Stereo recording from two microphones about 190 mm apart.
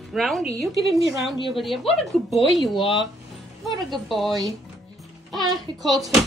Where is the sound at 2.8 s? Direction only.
25° left (ahead or behind).